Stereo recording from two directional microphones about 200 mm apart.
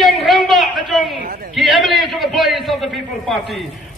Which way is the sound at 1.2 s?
50° right (ahead or behind).